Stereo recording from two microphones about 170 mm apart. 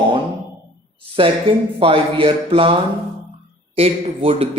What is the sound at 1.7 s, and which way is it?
A man's voice, 30° right (ahead or behind).